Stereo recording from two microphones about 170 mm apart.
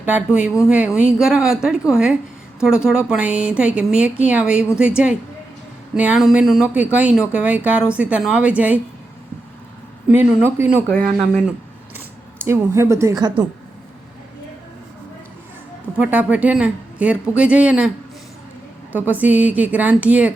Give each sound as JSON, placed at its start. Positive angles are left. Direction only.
{"t": 0.0, "sound": "a woman's voice", "side_deg": -10}
{"t": 10.1, "sound": "a woman's voice", "side_deg": -10}
{"t": 10.9, "sound": "speech", "side_deg": 5}
{"t": 12.4, "sound": "a woman's voice", "side_deg": -15}
{"t": 16.0, "sound": "a woman's voice", "side_deg": -10}